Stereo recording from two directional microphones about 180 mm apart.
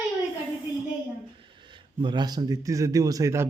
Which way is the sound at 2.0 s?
25° right (ahead or behind).